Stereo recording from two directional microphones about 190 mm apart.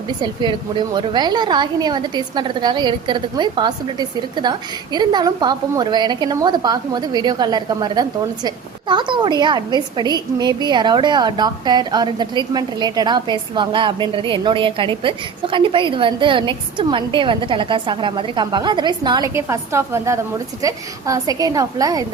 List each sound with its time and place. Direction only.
0.9 s a woman's voice: 25° right (ahead or behind)
4.9 s a woman's voice: 25° right (ahead or behind)